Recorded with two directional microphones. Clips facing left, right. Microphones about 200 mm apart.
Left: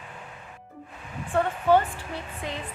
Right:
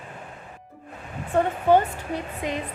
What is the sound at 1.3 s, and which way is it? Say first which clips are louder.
A woman's voice: right 2 dB; 15° right (ahead or behind).